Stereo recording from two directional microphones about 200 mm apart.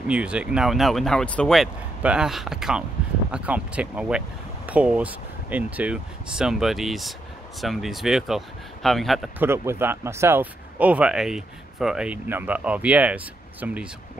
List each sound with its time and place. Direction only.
0.1 s speech: 5° right (ahead or behind)
9.4 s speech: 10° right (ahead or behind)